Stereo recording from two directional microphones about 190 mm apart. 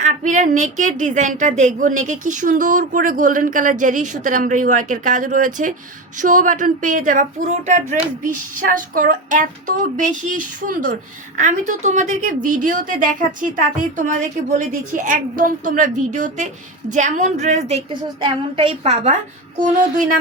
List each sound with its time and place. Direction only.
0.0 s a woman's voice: 40° right (ahead or behind)